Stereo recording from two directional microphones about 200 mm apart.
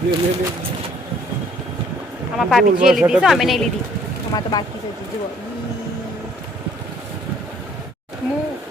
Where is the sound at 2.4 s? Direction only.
Centre (ahead or behind).